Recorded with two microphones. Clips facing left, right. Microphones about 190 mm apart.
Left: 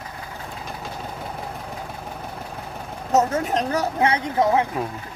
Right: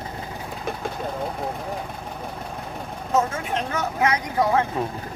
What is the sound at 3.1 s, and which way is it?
Speech, 40° left (ahead or behind).